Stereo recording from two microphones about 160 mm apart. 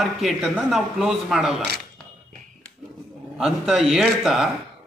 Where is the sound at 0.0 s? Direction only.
Centre (ahead or behind).